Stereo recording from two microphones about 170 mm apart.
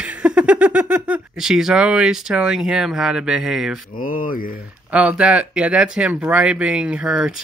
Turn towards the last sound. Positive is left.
turn(degrees=-5)  # may be behind; listen again after turning